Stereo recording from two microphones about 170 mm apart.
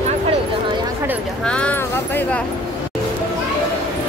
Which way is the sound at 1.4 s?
5° left (ahead or behind).